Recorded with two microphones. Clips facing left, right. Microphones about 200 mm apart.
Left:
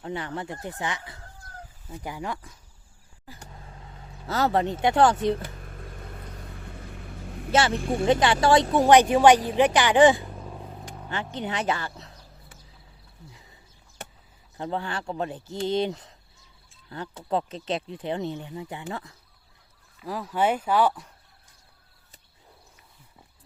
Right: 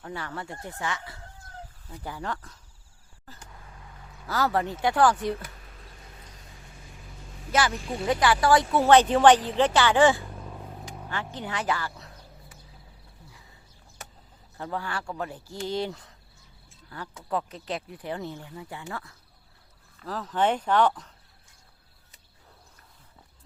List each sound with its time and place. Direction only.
0.0 s speech: 20° left (ahead or behind)
1.2 s chicken: 20° right (ahead or behind)
1.9 s a woman's voice: 15° left (ahead or behind)
3.5 s a sound: 25° left (ahead or behind)
5.6 s vehicle: 55° left (ahead or behind)
7.5 s a woman's voice: 25° left (ahead or behind)
10.3 s vehicle: 10° left (ahead or behind)
10.6 s vehicle: centre (ahead or behind)
11.1 s speech: 20° left (ahead or behind)
14.6 s a woman's voice: 20° left (ahead or behind)